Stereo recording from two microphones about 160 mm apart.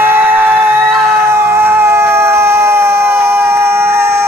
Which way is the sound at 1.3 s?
15° right (ahead or behind).